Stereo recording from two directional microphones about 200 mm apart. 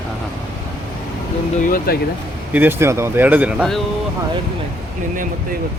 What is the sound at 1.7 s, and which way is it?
Speech, 50° left (ahead or behind).